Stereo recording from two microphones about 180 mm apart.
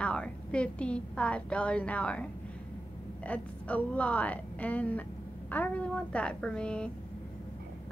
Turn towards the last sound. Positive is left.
turn(degrees=5)  # may be behind; listen again after turning